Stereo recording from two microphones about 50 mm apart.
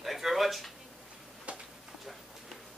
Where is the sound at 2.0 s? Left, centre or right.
Centre.